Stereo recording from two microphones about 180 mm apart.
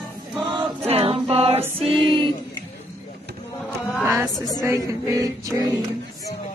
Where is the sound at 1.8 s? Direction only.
30° right (ahead or behind).